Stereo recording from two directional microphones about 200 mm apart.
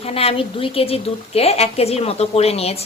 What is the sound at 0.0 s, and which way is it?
A woman's voice, 30° left (ahead or behind).